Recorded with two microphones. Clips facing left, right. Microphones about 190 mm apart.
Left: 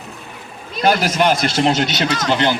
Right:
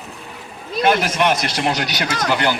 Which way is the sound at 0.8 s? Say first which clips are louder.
Left 2 dB; 30° left (ahead or behind).